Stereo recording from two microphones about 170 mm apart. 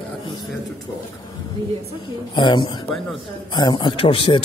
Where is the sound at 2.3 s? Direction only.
30° left (ahead or behind).